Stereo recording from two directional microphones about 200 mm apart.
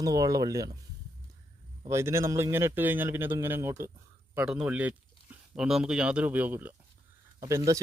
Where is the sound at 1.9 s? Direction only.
15° right (ahead or behind).